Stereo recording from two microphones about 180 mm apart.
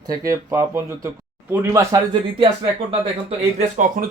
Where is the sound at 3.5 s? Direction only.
45° right (ahead or behind).